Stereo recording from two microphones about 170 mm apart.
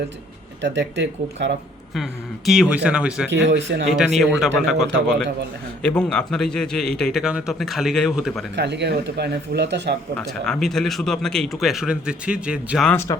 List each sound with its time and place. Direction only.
0.6 s speech: 90° right
1.9 s speech: centre (ahead or behind)
3.2 s speech: 90° right
4.2 s speech: centre (ahead or behind)
8.5 s speech: 85° right
10.2 s speech: 5° left (ahead or behind)
12.9 s speech: 15° left (ahead or behind)